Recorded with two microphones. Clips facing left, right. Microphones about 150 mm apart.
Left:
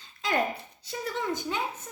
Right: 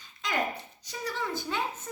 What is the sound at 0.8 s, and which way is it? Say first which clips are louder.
Child singing: left 3 dB; 25° left (ahead or behind).